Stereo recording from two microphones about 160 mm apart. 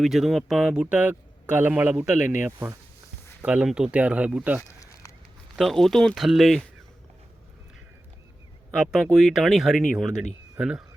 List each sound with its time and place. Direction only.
0.0 s speech: centre (ahead or behind)
8.9 s speech: centre (ahead or behind)